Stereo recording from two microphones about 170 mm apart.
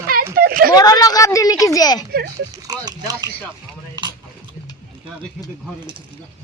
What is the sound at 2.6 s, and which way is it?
Speech, 20° right (ahead or behind).